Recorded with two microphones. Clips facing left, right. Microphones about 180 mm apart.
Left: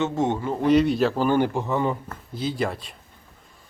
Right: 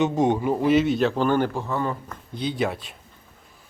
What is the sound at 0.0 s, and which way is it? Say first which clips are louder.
Speech: right 3 dB; 15° right (ahead or behind).